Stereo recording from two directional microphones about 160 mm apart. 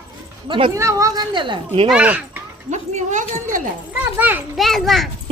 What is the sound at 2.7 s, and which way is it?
Speech, 50° right (ahead or behind).